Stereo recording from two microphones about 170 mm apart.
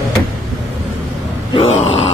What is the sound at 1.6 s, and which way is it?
Grunt, 35° left (ahead or behind).